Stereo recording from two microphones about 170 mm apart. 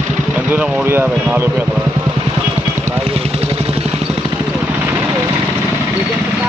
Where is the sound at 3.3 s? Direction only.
35° right (ahead or behind).